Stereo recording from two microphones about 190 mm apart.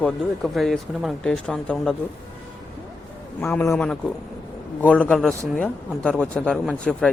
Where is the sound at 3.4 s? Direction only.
10° left (ahead or behind).